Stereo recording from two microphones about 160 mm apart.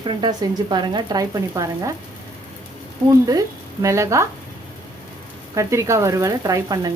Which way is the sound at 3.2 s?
20° right (ahead or behind).